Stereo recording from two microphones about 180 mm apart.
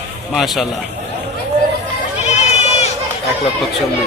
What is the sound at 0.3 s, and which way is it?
Speech, centre (ahead or behind).